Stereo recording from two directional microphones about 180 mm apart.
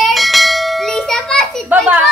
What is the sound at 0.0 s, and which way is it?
Bell, centre (ahead or behind).